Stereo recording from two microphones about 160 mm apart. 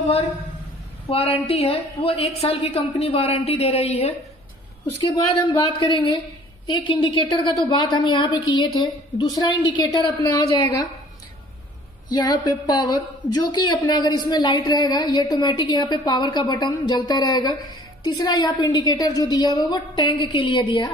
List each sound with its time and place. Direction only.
1.0 s a woman's voice: 35° left (ahead or behind)
5.7 s a woman's voice: 30° left (ahead or behind)
12.1 s a woman's voice: 25° left (ahead or behind)